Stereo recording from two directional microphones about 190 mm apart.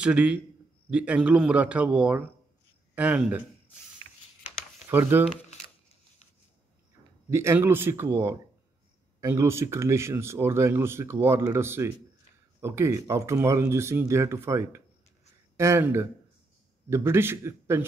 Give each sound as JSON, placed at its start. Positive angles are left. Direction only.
{"t": 0.0, "sound": "speech", "side_deg": -5}
{"t": 4.8, "sound": "speech", "side_deg": -10}
{"t": 7.2, "sound": "speech", "side_deg": -15}